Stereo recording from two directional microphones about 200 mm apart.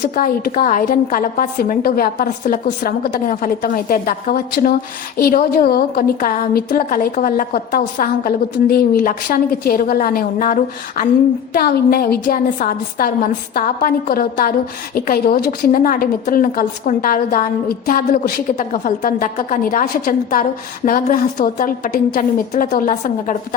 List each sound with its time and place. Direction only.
0.0 s a woman's voice: 45° left (ahead or behind)